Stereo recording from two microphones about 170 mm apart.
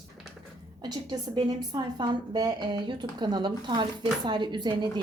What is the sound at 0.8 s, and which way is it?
A woman's voice, 25° right (ahead or behind).